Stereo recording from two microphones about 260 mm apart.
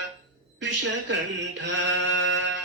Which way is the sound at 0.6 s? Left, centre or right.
Right.